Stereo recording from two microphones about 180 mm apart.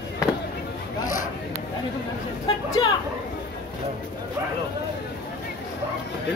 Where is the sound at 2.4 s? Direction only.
20° left (ahead or behind).